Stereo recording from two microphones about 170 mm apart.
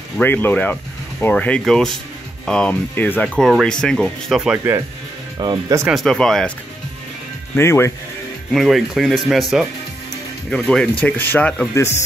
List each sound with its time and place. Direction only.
0.2 s speech: 10° left (ahead or behind)
5.4 s speech: 25° right (ahead or behind)
5.9 s speech: centre (ahead or behind)
7.5 s speech: 15° left (ahead or behind)
8.5 s speech: centre (ahead or behind); by 12.0 s 15° left (ahead or behind)